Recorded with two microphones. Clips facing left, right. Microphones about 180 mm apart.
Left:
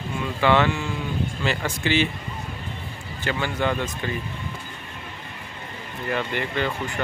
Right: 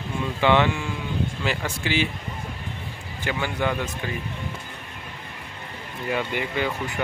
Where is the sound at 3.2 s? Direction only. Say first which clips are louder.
Left 1 dB; 10° right (ahead or behind).